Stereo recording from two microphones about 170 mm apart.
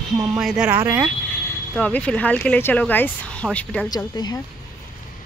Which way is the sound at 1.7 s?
5° left (ahead or behind).